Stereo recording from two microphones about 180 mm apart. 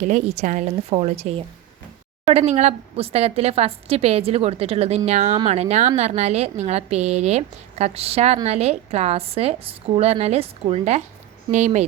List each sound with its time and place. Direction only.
0.0 s a woman's voice: 45° right (ahead or behind)